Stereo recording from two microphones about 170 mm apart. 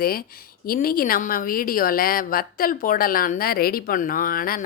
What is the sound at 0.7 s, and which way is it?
Speech, 60° left (ahead or behind).